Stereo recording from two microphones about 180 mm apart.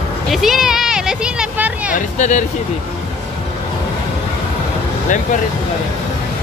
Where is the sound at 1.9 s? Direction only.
45° left (ahead or behind).